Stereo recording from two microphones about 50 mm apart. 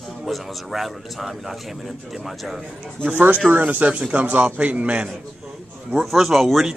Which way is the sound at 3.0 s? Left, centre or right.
Right.